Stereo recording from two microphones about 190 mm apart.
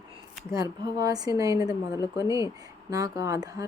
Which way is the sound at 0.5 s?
20° right (ahead or behind).